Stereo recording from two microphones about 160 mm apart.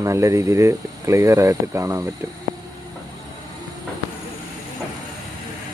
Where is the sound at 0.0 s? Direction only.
20° right (ahead or behind).